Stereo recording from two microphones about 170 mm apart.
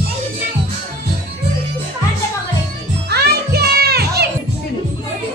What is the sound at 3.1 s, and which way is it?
Music, 70° right (ahead or behind).